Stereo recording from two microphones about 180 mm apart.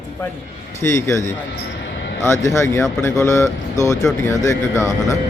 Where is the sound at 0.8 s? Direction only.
15° left (ahead or behind).